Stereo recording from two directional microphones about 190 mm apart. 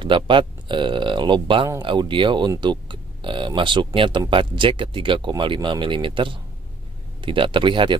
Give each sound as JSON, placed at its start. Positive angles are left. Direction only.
{"t": 0.0, "sound": "speech", "side_deg": -25}